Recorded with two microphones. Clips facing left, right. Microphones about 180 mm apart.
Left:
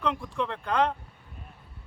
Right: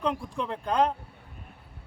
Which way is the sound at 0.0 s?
35° right (ahead or behind).